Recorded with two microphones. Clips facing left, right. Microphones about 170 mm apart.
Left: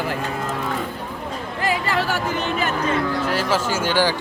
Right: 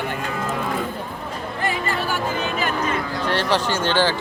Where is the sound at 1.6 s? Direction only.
85° left.